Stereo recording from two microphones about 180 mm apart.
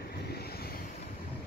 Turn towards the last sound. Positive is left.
turn(degrees=60)  # may be behind; listen again after turning